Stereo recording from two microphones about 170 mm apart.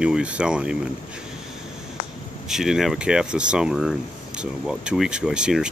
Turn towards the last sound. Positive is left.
turn(degrees=-5)  # may be behind; listen again after turning